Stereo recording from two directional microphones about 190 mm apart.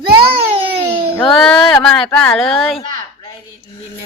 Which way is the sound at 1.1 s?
5° left (ahead or behind).